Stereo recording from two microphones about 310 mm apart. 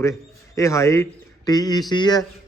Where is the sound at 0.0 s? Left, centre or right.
Centre.